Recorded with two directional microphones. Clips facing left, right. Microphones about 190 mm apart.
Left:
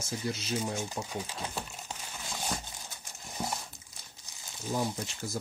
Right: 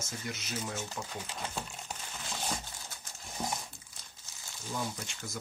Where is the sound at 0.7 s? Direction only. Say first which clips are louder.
Left 4 dB; 15° left (ahead or behind).